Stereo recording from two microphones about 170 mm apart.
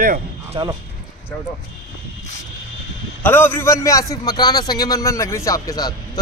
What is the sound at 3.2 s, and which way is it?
A man's voice, 10° left (ahead or behind).